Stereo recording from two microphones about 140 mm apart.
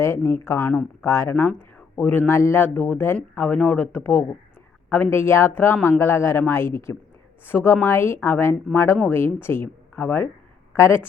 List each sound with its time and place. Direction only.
0.0 s a woman's voice: 20° left (ahead or behind)